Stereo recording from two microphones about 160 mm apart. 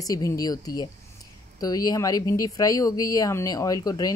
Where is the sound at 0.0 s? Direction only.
20° left (ahead or behind).